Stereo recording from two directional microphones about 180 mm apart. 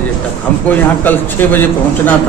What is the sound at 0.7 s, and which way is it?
A man's voice, 10° left (ahead or behind).